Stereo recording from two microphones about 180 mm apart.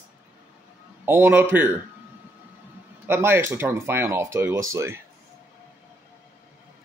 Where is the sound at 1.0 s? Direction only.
15° right (ahead or behind).